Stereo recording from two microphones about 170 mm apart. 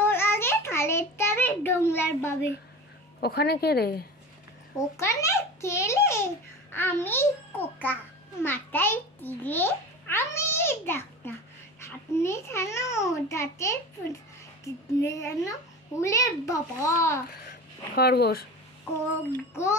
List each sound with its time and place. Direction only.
0.0 s a sound: 15° left (ahead or behind)
3.2 s a woman's voice: 70° left (ahead or behind)
4.7 s a child's voice: 15° left (ahead or behind)
15.0 s a child's voice: 15° left (ahead or behind)
17.5 s a sound: 70° left (ahead or behind)
19.5 s a child's voice: 15° left (ahead or behind)